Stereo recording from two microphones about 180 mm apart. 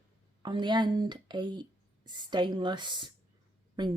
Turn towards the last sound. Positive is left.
turn(degrees=-25)  # may be behind; listen again after turning